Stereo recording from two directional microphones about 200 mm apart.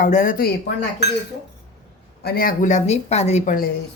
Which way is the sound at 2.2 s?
50° left (ahead or behind).